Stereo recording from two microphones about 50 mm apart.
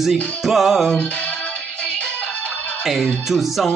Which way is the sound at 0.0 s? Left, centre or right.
Centre.